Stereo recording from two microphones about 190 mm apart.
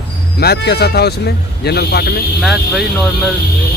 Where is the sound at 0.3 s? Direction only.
55° left (ahead or behind).